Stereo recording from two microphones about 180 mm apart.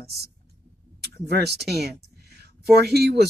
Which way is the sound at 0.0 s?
60° right (ahead or behind).